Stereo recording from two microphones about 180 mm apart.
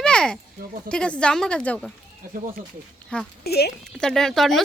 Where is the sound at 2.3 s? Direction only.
50° right (ahead or behind).